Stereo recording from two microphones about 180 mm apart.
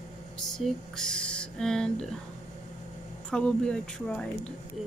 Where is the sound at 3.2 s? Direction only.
5° left (ahead or behind).